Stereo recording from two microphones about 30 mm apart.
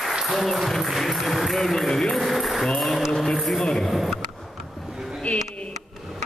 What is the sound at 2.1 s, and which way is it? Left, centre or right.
Music, centre.